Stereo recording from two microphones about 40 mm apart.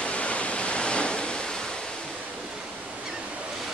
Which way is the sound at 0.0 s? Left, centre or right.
Left.